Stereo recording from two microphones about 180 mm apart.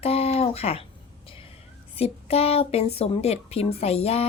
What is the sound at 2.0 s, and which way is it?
A woman's voice, 35° left (ahead or behind).